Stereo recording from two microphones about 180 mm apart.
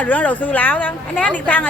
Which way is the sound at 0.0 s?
10° left (ahead or behind).